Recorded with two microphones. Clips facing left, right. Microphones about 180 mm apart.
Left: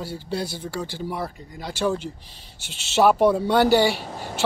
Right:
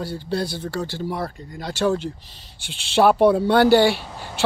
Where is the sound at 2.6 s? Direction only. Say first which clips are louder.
Right 4 dB; 45° left (ahead or behind).